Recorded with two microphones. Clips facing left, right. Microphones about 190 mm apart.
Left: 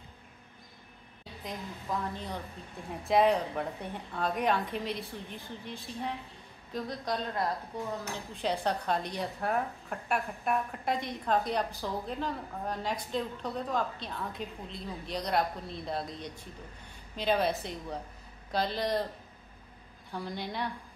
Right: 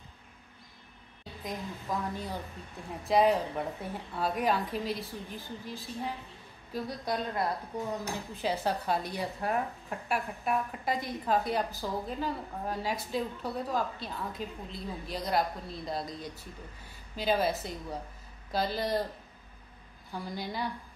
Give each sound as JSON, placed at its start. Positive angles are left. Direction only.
{"t": 1.4, "sound": "a woman's voice", "side_deg": -10}
{"t": 20.1, "sound": "a woman's voice", "side_deg": 0}